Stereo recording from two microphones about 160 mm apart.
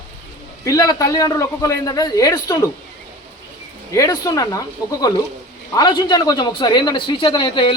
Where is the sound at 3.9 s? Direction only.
20° left (ahead or behind).